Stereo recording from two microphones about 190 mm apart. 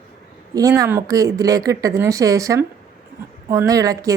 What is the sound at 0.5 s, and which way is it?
Speech, 15° right (ahead or behind).